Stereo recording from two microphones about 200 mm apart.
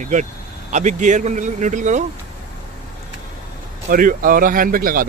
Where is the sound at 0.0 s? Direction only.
40° right (ahead or behind).